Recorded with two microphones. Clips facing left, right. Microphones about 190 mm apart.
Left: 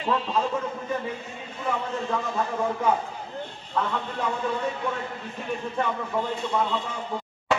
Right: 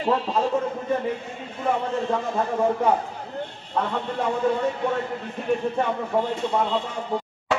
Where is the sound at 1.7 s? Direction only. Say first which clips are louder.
Right 4 dB; 30° right (ahead or behind).